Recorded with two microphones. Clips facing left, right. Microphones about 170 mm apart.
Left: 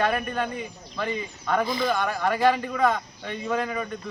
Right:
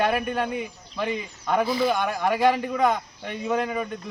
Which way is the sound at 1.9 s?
20° right (ahead or behind).